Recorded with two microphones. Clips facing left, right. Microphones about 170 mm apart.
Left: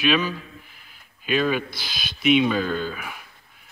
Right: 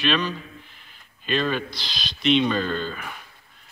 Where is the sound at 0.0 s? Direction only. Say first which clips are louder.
Left 2 dB; 5° left (ahead or behind).